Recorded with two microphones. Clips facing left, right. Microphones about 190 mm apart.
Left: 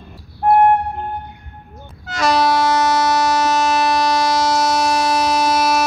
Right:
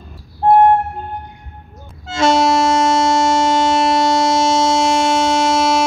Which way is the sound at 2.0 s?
25° right (ahead or behind).